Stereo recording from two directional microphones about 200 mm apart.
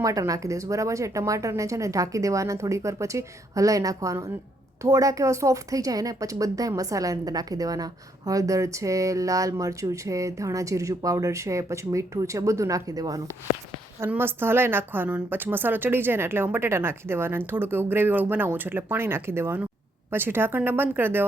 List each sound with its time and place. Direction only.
0.0 s a woman's voice: 15° right (ahead or behind)